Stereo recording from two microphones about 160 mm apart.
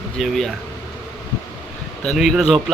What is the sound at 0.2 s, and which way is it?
Speech, centre (ahead or behind).